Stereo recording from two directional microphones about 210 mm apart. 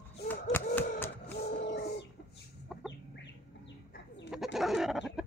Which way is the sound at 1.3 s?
50° left (ahead or behind).